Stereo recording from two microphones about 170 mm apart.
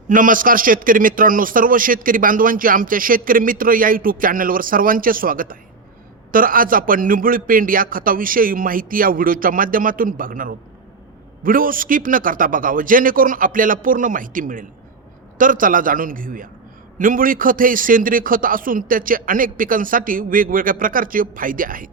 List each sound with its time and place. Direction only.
0.1 s a man's voice: 50° right (ahead or behind)